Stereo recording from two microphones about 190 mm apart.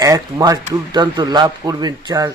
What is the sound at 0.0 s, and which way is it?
A man's voice, 20° right (ahead or behind).